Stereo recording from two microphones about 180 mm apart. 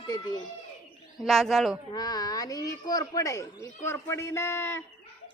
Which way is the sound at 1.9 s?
20° left (ahead or behind).